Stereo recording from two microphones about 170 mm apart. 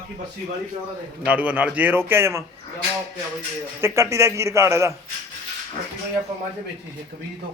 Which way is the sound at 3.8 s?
15° right (ahead or behind).